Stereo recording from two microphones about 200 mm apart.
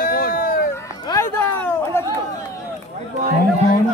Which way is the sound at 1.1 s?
15° left (ahead or behind).